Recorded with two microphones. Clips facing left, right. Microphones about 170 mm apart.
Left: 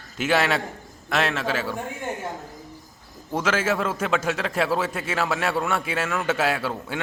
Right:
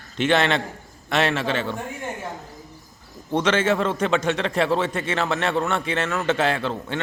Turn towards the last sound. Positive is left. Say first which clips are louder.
# right 1 dB
turn(degrees=5)  # may be behind; listen again after turning